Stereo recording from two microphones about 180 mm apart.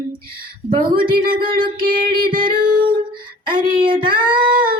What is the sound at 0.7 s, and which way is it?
Child singing, 25° right (ahead or behind).